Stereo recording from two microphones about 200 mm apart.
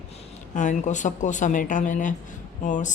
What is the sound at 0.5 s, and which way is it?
A woman's voice, 40° left (ahead or behind).